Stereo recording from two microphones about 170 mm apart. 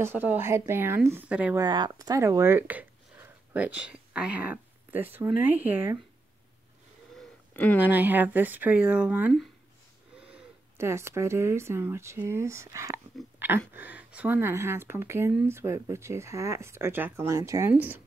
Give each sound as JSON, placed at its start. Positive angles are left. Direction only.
{"t": 0.0, "sound": "speech", "side_deg": -10}
{"t": 1.6, "sound": "speech", "side_deg": -25}
{"t": 7.2, "sound": "a sound", "side_deg": 10}
{"t": 7.8, "sound": "speech", "side_deg": -10}